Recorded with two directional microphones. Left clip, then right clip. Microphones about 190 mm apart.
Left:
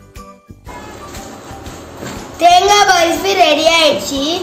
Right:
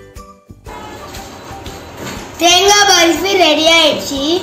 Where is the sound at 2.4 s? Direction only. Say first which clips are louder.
Left 1 dB; 25° left (ahead or behind).